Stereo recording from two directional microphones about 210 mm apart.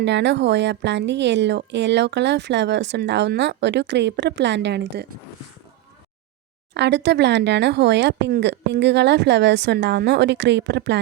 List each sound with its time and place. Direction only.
0.0 s a woman's voice: 55° right (ahead or behind)
6.7 s a woman's voice: 55° right (ahead or behind)